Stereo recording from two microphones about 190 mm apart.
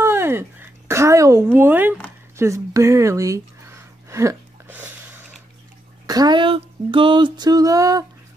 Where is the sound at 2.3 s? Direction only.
15° right (ahead or behind).